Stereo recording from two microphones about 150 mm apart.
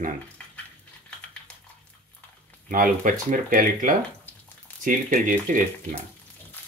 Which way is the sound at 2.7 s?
65° right (ahead or behind).